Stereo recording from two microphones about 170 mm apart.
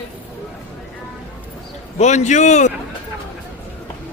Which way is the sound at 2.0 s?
45° left (ahead or behind).